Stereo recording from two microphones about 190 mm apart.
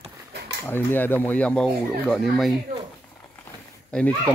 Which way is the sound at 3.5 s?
5° left (ahead or behind).